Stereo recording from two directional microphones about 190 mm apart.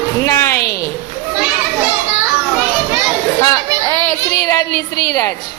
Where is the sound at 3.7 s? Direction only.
20° right (ahead or behind).